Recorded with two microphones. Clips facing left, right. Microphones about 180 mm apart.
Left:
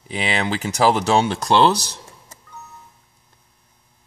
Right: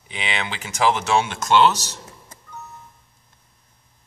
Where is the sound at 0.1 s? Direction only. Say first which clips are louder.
Left 6 dB; 40° left (ahead or behind).